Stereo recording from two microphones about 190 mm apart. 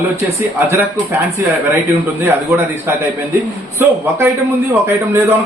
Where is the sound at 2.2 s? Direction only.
10° right (ahead or behind).